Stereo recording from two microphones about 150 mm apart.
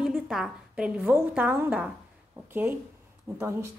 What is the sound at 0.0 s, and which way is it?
A woman's voice, centre (ahead or behind).